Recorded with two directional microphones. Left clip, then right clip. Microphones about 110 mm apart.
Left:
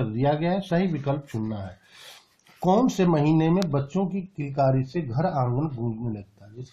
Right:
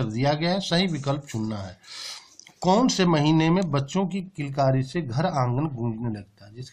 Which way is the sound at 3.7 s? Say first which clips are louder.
Right 1 dB; centre (ahead or behind).